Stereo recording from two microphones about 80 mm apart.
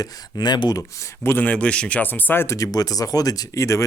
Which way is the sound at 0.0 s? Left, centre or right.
Left.